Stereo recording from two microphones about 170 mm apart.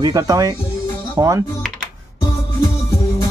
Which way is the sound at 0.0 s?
20° right (ahead or behind).